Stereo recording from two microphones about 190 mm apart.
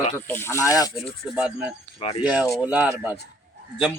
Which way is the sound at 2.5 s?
5° right (ahead or behind).